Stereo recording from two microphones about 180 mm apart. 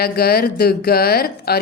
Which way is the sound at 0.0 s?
60° left (ahead or behind).